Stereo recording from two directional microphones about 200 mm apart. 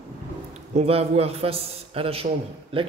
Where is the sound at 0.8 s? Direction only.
30° right (ahead or behind).